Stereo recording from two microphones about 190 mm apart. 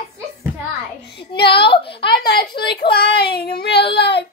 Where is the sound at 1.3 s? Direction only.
60° left (ahead or behind).